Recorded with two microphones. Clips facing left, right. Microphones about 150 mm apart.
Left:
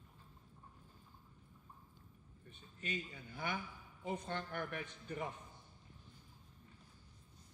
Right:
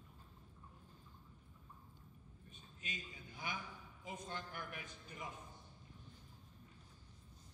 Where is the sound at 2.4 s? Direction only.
60° left (ahead or behind).